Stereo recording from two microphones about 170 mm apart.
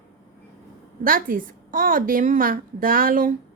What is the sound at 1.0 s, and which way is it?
A woman's voice, 55° right (ahead or behind).